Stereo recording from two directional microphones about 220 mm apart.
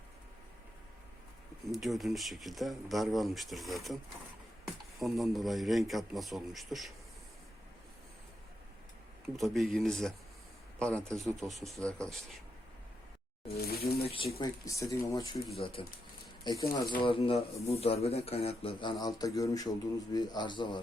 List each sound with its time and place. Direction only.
1.7 s a man's voice: centre (ahead or behind)
9.3 s a man's voice: centre (ahead or behind)
13.6 s speech: 45° left (ahead or behind)
14.3 s a man's voice: 15° left (ahead or behind)